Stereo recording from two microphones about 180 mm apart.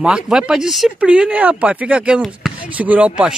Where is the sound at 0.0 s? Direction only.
5° right (ahead or behind).